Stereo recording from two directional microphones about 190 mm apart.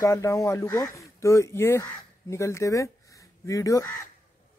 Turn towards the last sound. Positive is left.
turn(degrees=15)  # may be behind; listen again after turning